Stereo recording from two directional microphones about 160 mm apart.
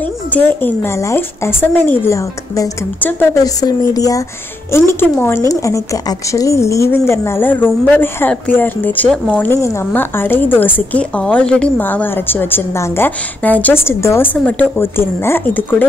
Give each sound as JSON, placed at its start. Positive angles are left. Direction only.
{"t": 0.0, "sound": "speech", "side_deg": 10}
{"t": 3.6, "sound": "speech", "side_deg": 25}